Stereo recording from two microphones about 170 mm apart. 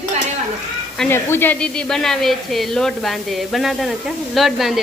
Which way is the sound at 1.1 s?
15° left (ahead or behind).